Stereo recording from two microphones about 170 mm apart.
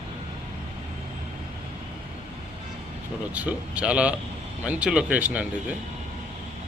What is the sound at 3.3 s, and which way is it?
Speech, 10° right (ahead or behind).